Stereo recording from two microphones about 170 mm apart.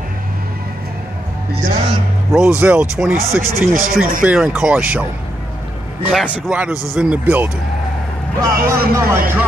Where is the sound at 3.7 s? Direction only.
55° right (ahead or behind).